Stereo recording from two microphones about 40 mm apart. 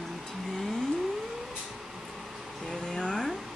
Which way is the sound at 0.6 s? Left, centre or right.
Centre.